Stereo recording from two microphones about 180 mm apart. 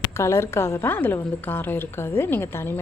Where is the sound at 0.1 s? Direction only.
15° left (ahead or behind).